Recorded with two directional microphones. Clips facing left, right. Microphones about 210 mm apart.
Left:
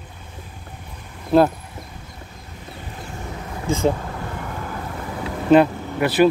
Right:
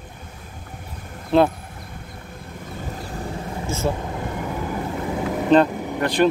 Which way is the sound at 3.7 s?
15° left (ahead or behind).